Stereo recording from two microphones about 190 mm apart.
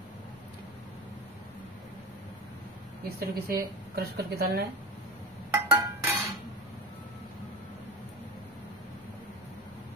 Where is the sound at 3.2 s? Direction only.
55° right (ahead or behind).